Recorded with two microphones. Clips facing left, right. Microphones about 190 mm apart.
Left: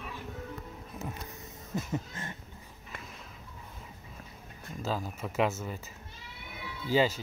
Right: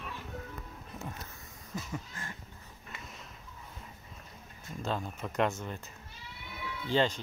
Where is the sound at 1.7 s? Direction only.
20° left (ahead or behind).